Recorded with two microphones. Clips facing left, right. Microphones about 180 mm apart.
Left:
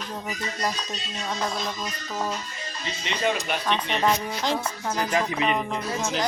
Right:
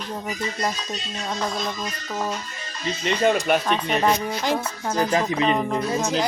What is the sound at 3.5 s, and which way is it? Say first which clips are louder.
Speech: right 9 dB; 50° right (ahead or behind).